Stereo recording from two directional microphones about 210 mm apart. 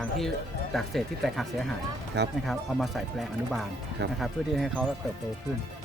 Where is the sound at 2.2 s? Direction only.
55° right (ahead or behind).